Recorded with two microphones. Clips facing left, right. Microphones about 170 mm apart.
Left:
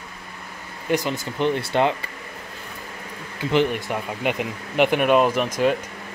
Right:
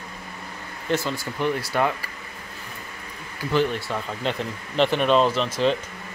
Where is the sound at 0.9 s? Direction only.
15° left (ahead or behind).